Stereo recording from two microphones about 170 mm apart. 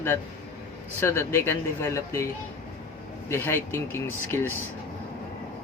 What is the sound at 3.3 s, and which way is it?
Speech, 15° left (ahead or behind).